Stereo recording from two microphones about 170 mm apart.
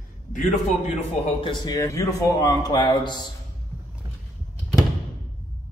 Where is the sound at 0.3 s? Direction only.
45° left (ahead or behind).